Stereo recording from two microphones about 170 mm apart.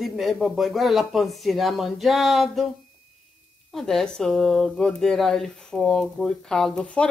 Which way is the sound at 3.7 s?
Centre (ahead or behind).